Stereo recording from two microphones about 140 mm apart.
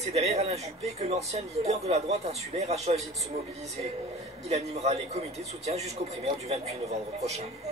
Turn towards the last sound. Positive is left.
turn(degrees=-50)  # may be behind; listen again after turning